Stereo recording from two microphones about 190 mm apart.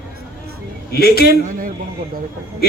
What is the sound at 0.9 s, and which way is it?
Speech, 55° left (ahead or behind).